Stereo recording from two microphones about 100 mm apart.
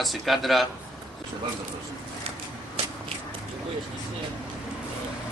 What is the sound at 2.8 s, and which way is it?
Biting, 80° right.